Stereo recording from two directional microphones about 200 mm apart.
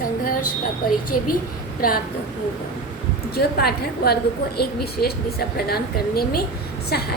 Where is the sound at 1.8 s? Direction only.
45° left (ahead or behind).